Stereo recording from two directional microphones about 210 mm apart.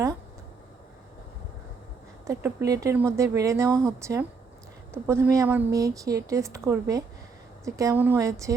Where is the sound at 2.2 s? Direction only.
15° right (ahead or behind).